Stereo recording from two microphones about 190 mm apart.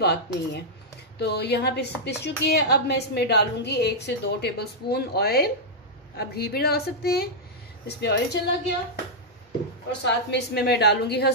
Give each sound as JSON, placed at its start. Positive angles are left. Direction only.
{"t": 0.0, "sound": "a woman's voice", "side_deg": 60}
{"t": 10.0, "sound": "a woman's voice", "side_deg": 65}